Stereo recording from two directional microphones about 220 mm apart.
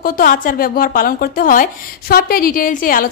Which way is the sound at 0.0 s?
40° left (ahead or behind).